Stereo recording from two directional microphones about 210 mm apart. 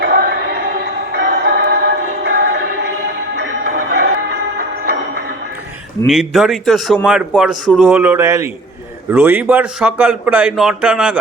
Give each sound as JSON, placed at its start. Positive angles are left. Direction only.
{"t": 0.0, "sound": "music", "side_deg": -45}
{"t": 3.3, "sound": "music", "side_deg": -45}
{"t": 6.1, "sound": "a man's voice", "side_deg": 0}